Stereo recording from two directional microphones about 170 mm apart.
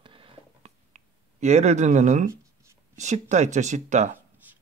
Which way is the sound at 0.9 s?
40° right (ahead or behind).